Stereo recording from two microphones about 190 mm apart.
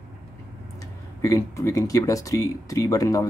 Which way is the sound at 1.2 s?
15° left (ahead or behind).